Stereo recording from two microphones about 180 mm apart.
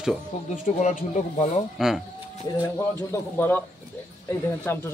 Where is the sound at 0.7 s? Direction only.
40° left (ahead or behind).